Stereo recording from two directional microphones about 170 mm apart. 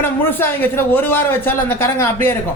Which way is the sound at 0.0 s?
10° left (ahead or behind).